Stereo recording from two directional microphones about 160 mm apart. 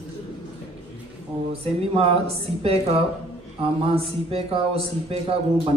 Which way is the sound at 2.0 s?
40° right (ahead or behind).